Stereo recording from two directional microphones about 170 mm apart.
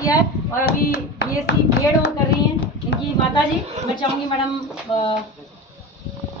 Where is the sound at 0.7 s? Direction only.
75° left (ahead or behind).